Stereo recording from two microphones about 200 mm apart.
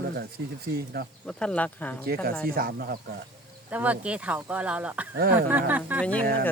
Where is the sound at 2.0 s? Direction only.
50° right (ahead or behind).